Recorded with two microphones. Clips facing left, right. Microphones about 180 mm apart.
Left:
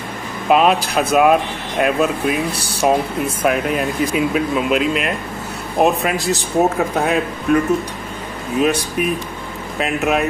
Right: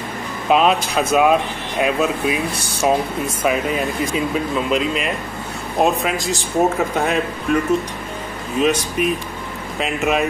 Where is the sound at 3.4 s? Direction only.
Centre (ahead or behind).